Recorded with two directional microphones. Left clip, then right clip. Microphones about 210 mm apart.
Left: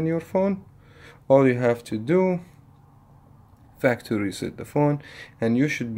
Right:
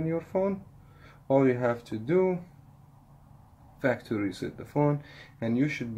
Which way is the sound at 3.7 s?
35° left (ahead or behind).